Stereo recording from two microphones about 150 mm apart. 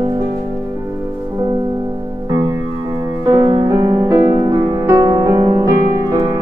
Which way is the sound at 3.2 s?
25° right (ahead or behind).